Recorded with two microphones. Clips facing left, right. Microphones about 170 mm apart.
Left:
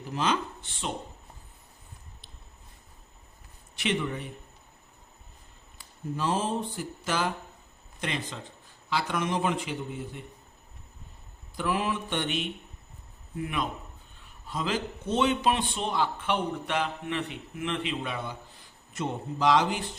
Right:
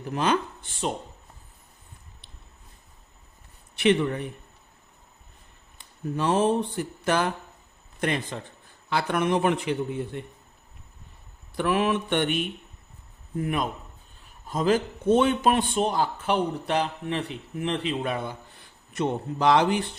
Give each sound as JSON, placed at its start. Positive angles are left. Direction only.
{"t": 0.1, "sound": "a man's voice", "side_deg": -55}
{"t": 3.8, "sound": "a man's voice", "side_deg": -60}
{"t": 6.1, "sound": "a man's voice", "side_deg": -65}
{"t": 11.5, "sound": "a man's voice", "side_deg": -65}
{"t": 13.4, "sound": "a man's voice", "side_deg": -45}
{"t": 18.9, "sound": "a man's voice", "side_deg": -60}